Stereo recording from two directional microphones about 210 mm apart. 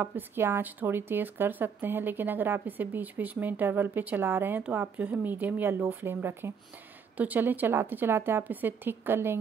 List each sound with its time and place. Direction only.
0.0 s speech: 10° right (ahead or behind)